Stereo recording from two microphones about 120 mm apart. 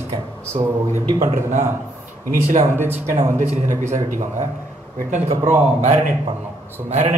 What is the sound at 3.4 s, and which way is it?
Speech, 80° right.